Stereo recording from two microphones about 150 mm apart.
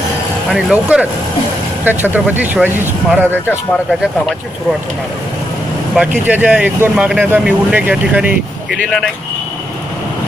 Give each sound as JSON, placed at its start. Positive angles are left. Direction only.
{"t": 0.5, "sound": "speech", "side_deg": -5}
{"t": 5.9, "sound": "speech", "side_deg": -10}